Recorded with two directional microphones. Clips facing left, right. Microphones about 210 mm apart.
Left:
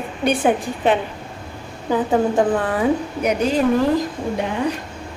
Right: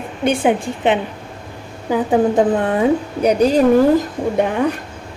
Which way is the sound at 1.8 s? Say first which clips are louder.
Right 3 dB; 20° right (ahead or behind).